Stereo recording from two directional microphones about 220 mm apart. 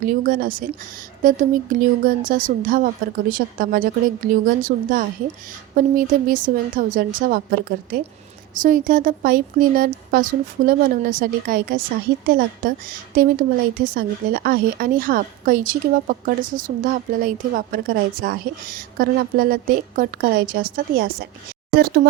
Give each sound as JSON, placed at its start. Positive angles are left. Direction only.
{"t": 0.0, "sound": "a woman's voice", "side_deg": -40}